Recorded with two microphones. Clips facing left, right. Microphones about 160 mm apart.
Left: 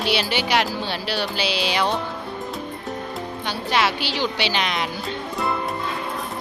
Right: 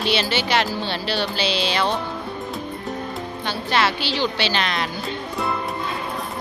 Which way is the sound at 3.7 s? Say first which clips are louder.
Even; 10° left (ahead or behind).